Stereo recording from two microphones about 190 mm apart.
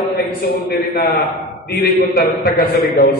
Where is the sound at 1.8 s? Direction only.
55° left (ahead or behind).